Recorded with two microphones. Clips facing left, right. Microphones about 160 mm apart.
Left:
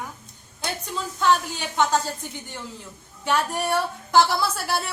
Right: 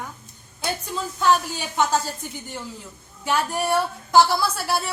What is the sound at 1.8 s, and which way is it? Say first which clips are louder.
Speech: even; 5° right (ahead or behind).